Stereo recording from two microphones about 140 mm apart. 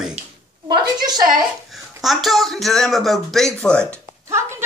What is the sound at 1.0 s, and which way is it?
Speech, 30° right (ahead or behind).